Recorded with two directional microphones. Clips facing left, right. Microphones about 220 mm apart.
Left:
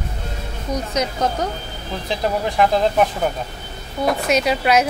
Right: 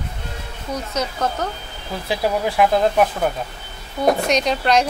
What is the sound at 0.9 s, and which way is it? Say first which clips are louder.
Speech: left 2 dB; 15° left (ahead or behind).